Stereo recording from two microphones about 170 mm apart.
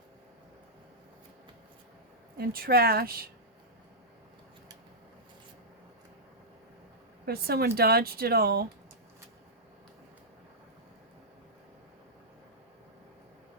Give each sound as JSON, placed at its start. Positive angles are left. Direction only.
{"t": 2.4, "sound": "speech", "side_deg": -65}
{"t": 7.3, "sound": "speech", "side_deg": -65}